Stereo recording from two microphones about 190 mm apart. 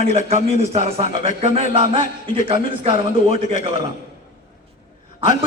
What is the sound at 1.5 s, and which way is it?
Speech, 30° right (ahead or behind).